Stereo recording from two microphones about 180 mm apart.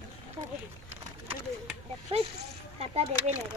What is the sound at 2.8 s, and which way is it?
Speech, 35° right (ahead or behind).